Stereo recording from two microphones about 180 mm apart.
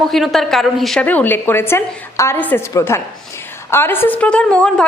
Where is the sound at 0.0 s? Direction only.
Centre (ahead or behind).